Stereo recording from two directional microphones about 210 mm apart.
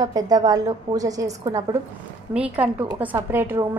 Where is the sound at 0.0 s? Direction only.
20° right (ahead or behind).